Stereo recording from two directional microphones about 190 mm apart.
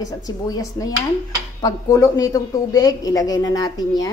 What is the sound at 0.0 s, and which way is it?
A woman's voice, 20° left (ahead or behind).